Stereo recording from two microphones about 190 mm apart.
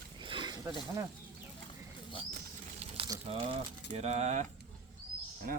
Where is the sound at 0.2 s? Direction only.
25° right (ahead or behind).